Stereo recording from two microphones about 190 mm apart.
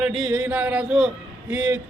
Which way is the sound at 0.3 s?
10° right (ahead or behind).